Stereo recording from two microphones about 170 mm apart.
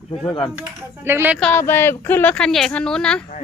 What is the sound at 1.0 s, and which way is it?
Speech, 15° right (ahead or behind).